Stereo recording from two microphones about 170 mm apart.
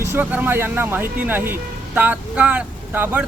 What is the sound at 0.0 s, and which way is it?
Speech, 15° right (ahead or behind).